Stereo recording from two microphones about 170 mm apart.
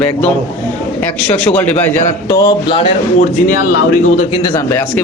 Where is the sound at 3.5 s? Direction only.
50° left (ahead or behind).